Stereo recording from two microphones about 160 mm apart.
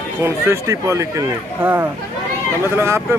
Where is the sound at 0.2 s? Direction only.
20° right (ahead or behind).